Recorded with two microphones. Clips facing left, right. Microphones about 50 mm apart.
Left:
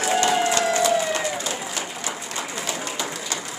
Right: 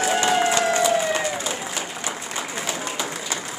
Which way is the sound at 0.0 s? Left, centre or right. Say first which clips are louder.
Right 1 dB; centre.